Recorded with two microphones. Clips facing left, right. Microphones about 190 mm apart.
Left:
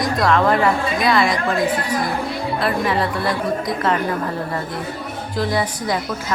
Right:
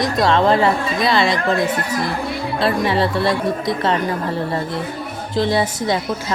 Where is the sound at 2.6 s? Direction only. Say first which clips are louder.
Right 3 dB; 30° right (ahead or behind).